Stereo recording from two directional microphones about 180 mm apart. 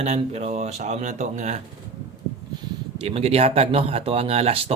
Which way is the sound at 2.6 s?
35° right (ahead or behind).